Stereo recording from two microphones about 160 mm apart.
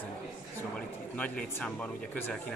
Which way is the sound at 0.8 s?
10° left (ahead or behind).